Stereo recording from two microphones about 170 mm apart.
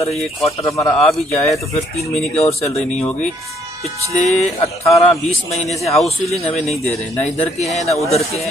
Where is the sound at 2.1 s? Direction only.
40° left (ahead or behind).